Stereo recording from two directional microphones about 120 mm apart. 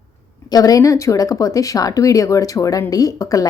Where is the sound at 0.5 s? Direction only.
30° left (ahead or behind).